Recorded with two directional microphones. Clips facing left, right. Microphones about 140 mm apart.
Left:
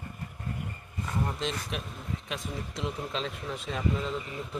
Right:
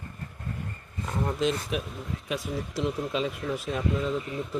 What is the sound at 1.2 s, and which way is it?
Speech, 5° right (ahead or behind).